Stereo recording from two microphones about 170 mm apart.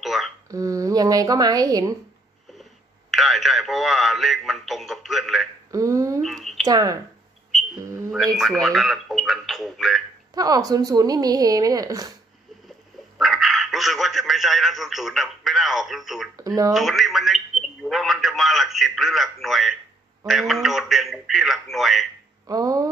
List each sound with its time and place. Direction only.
0.0 s hiccup: centre (ahead or behind)
0.5 s a woman's voice: 20° right (ahead or behind)
2.5 s speech: centre (ahead or behind)
5.7 s a sound: 20° right (ahead or behind)
6.2 s speech: centre (ahead or behind)
6.7 s a woman's voice: 20° right (ahead or behind)
8.4 s a man's voice: centre (ahead or behind)
10.3 s a woman's voice: 20° right (ahead or behind)
13.2 s a man's voice: centre (ahead or behind)
16.3 s a woman's voice: 20° right (ahead or behind)
16.7 s a man's voice: centre (ahead or behind)
22.5 s a woman's voice: 20° right (ahead or behind)